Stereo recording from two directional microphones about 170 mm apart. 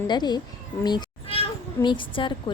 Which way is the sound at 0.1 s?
25° left (ahead or behind).